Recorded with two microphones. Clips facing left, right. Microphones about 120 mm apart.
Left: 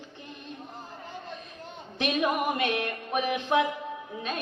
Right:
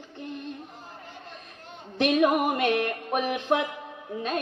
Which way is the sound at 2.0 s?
40° right (ahead or behind).